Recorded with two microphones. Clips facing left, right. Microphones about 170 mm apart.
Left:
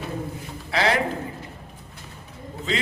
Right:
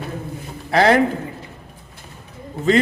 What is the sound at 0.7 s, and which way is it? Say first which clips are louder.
Speech: right 8 dB; 50° right (ahead or behind).